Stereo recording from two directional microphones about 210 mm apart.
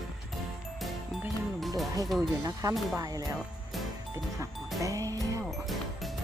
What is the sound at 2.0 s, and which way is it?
Speech, centre (ahead or behind).